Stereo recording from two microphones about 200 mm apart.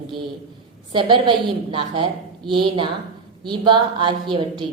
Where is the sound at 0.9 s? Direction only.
25° right (ahead or behind).